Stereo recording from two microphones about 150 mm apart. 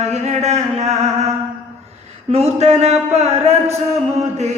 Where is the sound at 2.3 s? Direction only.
45° right (ahead or behind).